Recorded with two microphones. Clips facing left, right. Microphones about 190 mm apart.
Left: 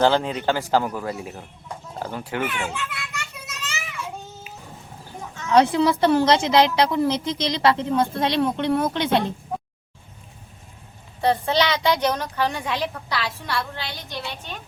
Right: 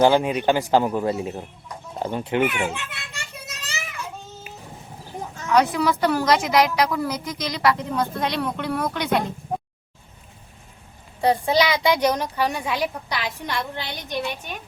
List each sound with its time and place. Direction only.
0.0 s a man's voice: 10° right (ahead or behind)
2.0 s children playing: 20° right (ahead or behind)
5.5 s a woman's voice: 25° left (ahead or behind)
11.2 s a woman's voice: 10° right (ahead or behind)